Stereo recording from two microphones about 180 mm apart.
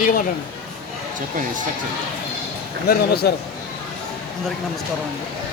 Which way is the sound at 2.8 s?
60° left (ahead or behind).